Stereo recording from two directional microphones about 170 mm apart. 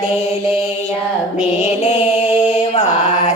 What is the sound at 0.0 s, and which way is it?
Mantra, 40° left (ahead or behind).